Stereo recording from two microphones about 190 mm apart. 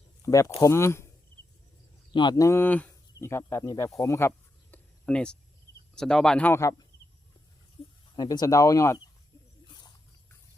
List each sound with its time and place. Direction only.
0.3 s speech: 15° left (ahead or behind)
2.1 s speech: 20° left (ahead or behind)
7.8 s a sound: 30° left (ahead or behind)
8.1 s speech: 20° left (ahead or behind)